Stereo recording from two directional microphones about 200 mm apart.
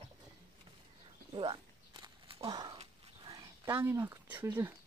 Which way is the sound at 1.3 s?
20° right (ahead or behind).